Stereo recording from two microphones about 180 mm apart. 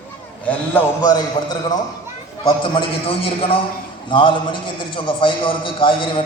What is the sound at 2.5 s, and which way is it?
A man's voice, 30° left (ahead or behind).